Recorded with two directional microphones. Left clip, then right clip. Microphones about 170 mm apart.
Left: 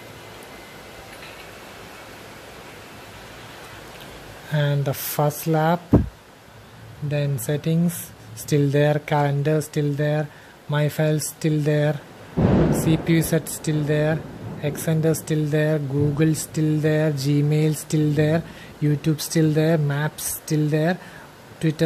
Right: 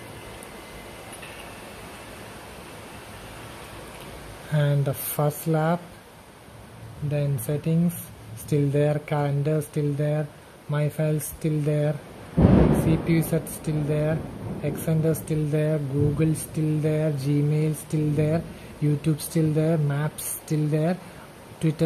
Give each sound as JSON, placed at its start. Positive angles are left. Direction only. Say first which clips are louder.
{"t": 4.5, "sound": "speech", "louder": "left 2 dB", "side_deg": 15}
{"t": 7.1, "sound": "speech", "louder": "left 3 dB", "side_deg": 15}